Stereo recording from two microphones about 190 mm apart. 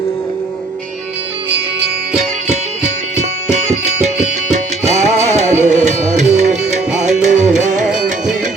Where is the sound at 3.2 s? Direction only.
35° right (ahead or behind).